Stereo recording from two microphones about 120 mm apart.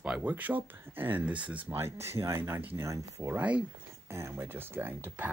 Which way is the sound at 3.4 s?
10° right (ahead or behind).